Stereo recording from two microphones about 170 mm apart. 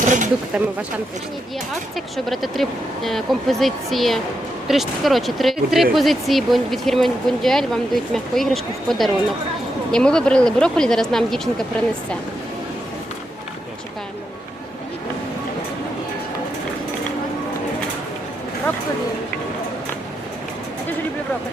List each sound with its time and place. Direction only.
0.0 s a sound: 50° right (ahead or behind)
0.5 s speech: 5° right (ahead or behind)
1.7 s speech: centre (ahead or behind)